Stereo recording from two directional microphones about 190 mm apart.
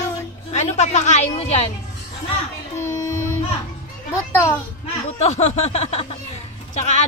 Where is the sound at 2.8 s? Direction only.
15° left (ahead or behind).